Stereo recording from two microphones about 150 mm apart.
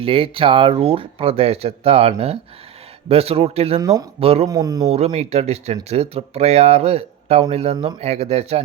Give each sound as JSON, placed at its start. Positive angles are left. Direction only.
{"t": 0.0, "sound": "speech", "side_deg": -40}
{"t": 3.8, "sound": "a man's voice", "side_deg": -20}
{"t": 4.2, "sound": "speech", "side_deg": -40}
{"t": 4.4, "sound": "a man's voice", "side_deg": -25}
{"t": 4.9, "sound": "speech", "side_deg": -45}